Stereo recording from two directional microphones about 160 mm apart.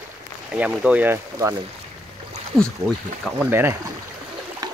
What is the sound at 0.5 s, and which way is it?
Speech, 5° right (ahead or behind).